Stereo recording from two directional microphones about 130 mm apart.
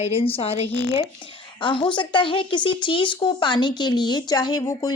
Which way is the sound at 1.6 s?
40° left (ahead or behind).